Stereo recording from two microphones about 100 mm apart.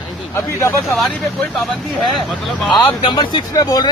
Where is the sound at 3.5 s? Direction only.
40° left (ahead or behind).